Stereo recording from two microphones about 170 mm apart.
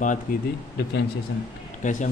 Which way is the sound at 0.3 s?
55° left (ahead or behind).